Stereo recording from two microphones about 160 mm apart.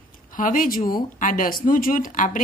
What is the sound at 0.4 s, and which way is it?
Speech, 60° left (ahead or behind).